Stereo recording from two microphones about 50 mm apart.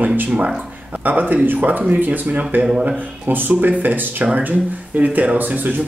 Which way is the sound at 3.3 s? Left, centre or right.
Right.